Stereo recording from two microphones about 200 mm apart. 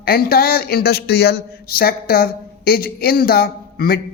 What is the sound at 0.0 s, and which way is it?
A man's voice, 50° left (ahead or behind).